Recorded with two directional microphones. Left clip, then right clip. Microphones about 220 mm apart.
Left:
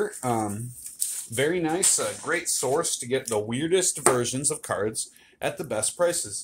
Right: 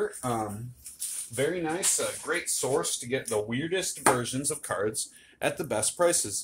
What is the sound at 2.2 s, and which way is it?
Speech, 25° left (ahead or behind).